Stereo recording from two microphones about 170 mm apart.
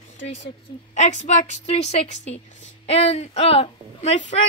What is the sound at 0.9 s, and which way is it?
A woman's voice, 45° left (ahead or behind).